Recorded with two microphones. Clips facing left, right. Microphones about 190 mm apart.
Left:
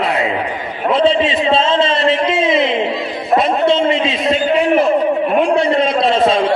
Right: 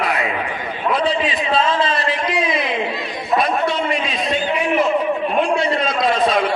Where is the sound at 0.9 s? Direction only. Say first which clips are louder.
Left 6 dB; 25° left (ahead or behind).